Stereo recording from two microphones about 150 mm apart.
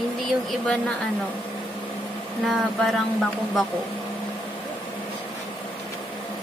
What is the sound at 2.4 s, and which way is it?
Speech, centre (ahead or behind).